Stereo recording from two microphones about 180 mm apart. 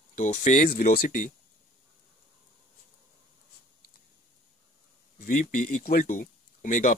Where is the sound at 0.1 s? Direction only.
45° left (ahead or behind).